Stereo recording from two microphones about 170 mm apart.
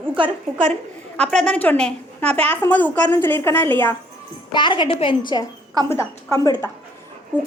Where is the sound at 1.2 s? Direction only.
5° left (ahead or behind).